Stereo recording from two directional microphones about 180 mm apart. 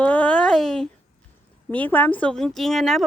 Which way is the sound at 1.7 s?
10° left (ahead or behind).